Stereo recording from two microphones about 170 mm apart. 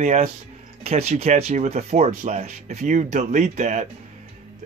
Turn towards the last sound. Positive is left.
turn(degrees=-45)  # may be behind; listen again after turning